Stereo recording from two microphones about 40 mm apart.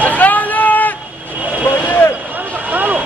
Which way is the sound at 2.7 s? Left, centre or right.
Right.